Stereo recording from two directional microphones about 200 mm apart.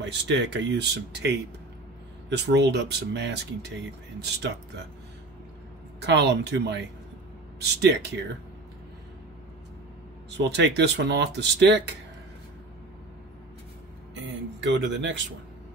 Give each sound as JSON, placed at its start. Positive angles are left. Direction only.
{"t": 0.0, "sound": "speech", "side_deg": -60}
{"t": 5.9, "sound": "speech", "side_deg": -60}
{"t": 10.3, "sound": "speech", "side_deg": -60}
{"t": 14.1, "sound": "speech", "side_deg": -65}